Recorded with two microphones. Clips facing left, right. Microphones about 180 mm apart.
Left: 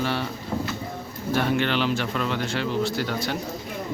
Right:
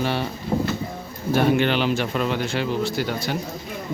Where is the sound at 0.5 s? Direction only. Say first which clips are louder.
Right 6 dB; 35° right (ahead or behind).